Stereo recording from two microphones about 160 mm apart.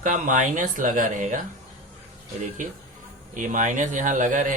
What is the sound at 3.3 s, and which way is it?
Speech, 50° right (ahead or behind).